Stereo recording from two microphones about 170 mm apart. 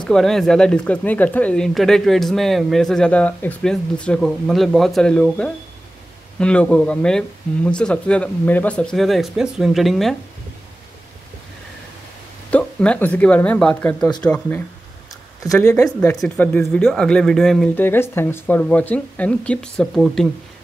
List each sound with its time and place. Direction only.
0.0 s speech: 5° left (ahead or behind)
12.4 s speech: 5° left (ahead or behind)
15.8 s speech: 15° left (ahead or behind)